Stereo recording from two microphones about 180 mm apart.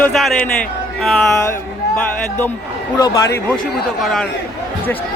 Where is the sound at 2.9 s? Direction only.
20° left (ahead or behind).